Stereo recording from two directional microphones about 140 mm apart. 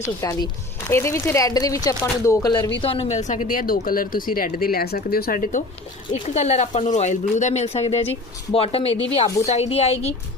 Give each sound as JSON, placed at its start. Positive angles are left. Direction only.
{"t": 0.2, "sound": "speech", "side_deg": 25}
{"t": 2.9, "sound": "a woman's voice", "side_deg": 45}
{"t": 6.2, "sound": "speech", "side_deg": 55}